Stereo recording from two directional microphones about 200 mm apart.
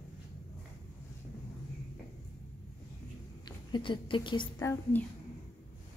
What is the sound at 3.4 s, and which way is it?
A woman's voice, 25° left (ahead or behind).